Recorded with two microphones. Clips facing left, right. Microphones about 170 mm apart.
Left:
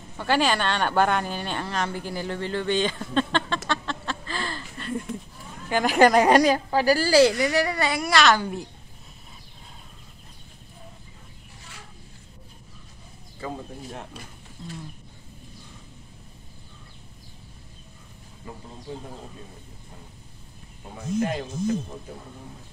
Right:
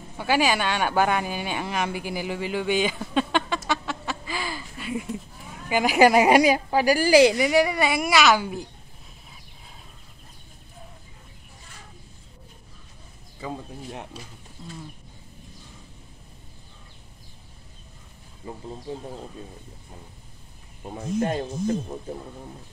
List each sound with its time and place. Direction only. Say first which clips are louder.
0.2 s a woman's voice: even; 10° right (ahead or behind)
21.2 s speech: right 1 dB; 35° right (ahead or behind)